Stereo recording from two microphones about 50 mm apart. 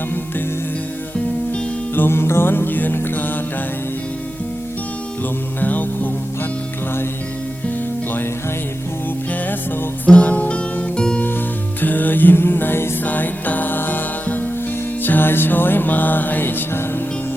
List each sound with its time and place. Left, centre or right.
2.0 s music: left
5.5 s music: left
10.1 s music: left
10.9 s music: centre
11.8 s music: left
13.1 s music: left